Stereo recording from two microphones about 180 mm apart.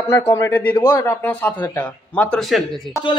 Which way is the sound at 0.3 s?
10° left (ahead or behind).